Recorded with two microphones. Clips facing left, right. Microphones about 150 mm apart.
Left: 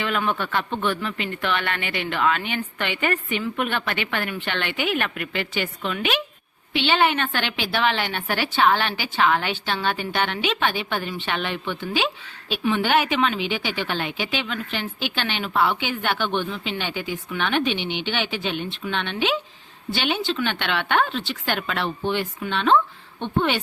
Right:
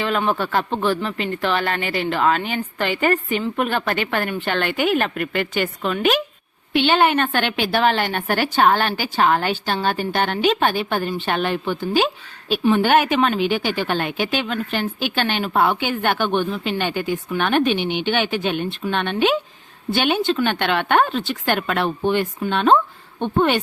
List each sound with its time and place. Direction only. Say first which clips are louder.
0.0 s a woman's voice: right 4 dB; 35° right (ahead or behind)